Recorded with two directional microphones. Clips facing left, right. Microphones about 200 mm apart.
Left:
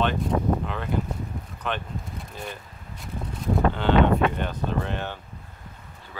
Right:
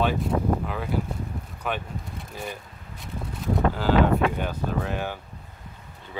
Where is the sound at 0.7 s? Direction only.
5° right (ahead or behind).